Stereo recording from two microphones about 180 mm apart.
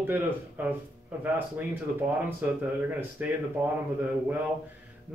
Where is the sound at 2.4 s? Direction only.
10° right (ahead or behind).